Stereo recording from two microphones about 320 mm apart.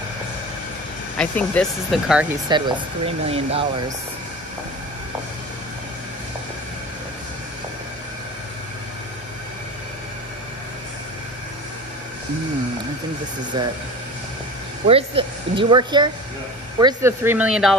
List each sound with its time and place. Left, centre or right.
1.1 s speech: centre
2.5 s speech: centre
13.5 s speech: centre
14.9 s speech: centre